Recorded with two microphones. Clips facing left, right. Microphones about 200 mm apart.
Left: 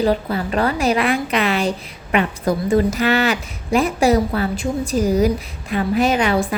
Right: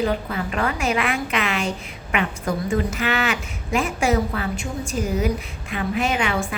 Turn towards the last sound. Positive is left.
turn(degrees=35)  # may be behind; listen again after turning